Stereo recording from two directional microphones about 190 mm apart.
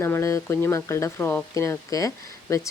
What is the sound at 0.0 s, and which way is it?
Speech, 15° left (ahead or behind).